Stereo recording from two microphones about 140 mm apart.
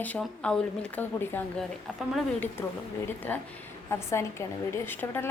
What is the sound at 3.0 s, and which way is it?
A woman's voice, 10° left (ahead or behind).